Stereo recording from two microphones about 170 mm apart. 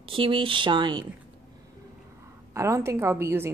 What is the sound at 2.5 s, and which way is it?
A woman's voice, 15° right (ahead or behind).